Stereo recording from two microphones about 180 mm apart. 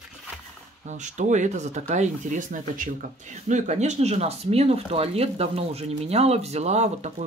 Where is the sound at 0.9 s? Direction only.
45° right (ahead or behind).